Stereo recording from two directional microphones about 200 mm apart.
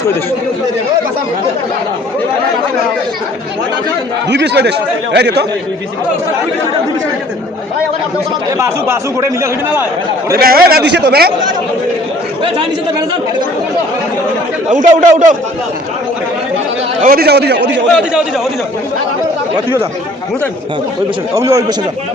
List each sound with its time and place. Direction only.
4.3 s a man's voice: 60° right (ahead or behind)
8.5 s a man's voice: 15° right (ahead or behind)
10.3 s a man's voice: 50° right (ahead or behind)
14.7 s a man's voice: 40° right (ahead or behind)
17.0 s a man's voice: 45° right (ahead or behind)
21.3 s a man's voice: 15° right (ahead or behind)